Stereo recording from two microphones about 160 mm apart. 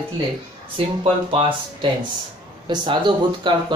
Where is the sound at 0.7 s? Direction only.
35° right (ahead or behind).